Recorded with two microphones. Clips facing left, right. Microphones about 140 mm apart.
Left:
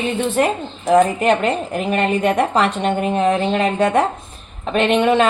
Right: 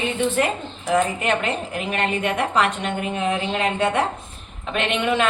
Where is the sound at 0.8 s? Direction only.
40° left (ahead or behind).